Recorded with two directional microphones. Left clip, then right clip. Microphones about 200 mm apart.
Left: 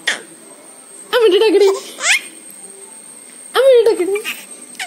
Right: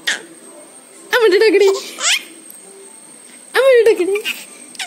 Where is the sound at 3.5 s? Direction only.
20° right (ahead or behind).